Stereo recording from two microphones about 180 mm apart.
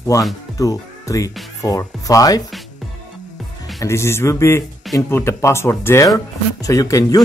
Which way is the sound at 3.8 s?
15° left (ahead or behind).